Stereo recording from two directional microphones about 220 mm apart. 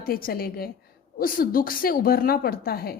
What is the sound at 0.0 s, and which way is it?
A woman's voice, 40° left (ahead or behind).